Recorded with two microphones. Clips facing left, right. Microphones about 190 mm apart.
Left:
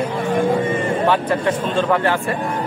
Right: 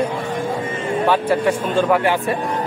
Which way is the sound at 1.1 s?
10° right (ahead or behind).